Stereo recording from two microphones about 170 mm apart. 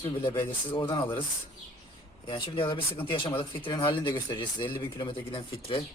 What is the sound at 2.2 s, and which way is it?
Speech, 30° left (ahead or behind).